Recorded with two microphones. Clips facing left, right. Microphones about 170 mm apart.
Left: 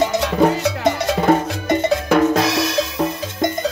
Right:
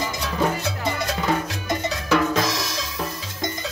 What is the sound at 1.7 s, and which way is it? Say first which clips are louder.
Cowbell: left 6 dB; 55° left (ahead or behind).